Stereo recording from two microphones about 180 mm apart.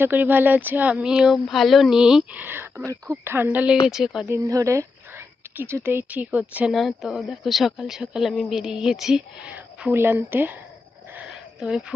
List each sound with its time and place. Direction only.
0.0 s speech: 10° right (ahead or behind)
4.3 s speech: 15° right (ahead or behind)
11.1 s a sound: 5° right (ahead or behind)